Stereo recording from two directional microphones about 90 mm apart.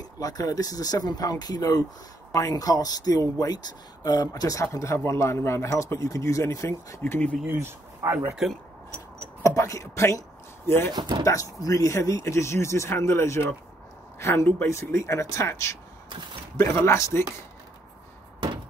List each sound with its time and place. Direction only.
0.0 s speech: 45° left (ahead or behind)
7.0 s speech: 15° left (ahead or behind)
7.5 s speech: 35° right (ahead or behind)
9.4 s speech: 35° left (ahead or behind)
10.9 s speech: 55° right (ahead or behind)
11.2 s speech: 40° left (ahead or behind)
16.8 s speech: 30° left (ahead or behind)